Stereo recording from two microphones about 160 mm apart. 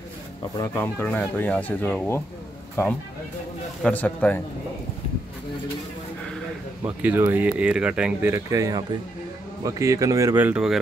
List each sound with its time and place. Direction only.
0.6 s speech: 15° left (ahead or behind)
7.0 s speech: 10° right (ahead or behind)